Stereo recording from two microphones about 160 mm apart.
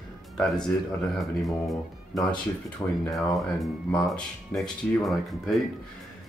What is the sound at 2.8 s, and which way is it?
Speech, 20° left (ahead or behind).